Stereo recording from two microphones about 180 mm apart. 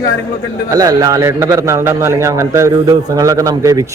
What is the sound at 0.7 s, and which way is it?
A man's voice, 20° right (ahead or behind).